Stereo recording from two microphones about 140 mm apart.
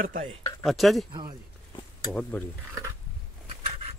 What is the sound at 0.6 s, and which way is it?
Speech, centre (ahead or behind).